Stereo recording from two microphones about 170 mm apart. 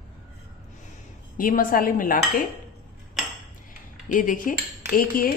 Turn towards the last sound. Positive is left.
turn(degrees=55)  # may be behind; listen again after turning